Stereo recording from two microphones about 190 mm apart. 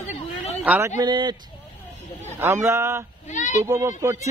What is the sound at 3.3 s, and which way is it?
Speech, 40° left (ahead or behind).